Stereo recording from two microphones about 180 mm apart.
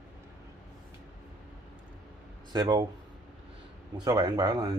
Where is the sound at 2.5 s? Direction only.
25° right (ahead or behind).